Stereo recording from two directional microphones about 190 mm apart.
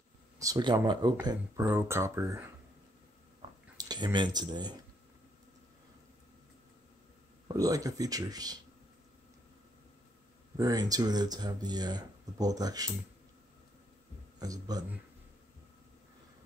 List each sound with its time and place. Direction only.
0.4 s speech: 20° right (ahead or behind)
3.7 s speech: 20° right (ahead or behind)
7.4 s speech: 20° right (ahead or behind)
10.6 s speech: 20° right (ahead or behind)
14.4 s speech: 20° right (ahead or behind)